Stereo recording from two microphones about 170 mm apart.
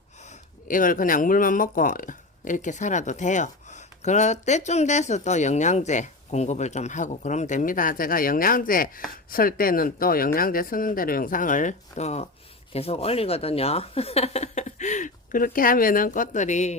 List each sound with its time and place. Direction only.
0.7 s speech: 55° left (ahead or behind)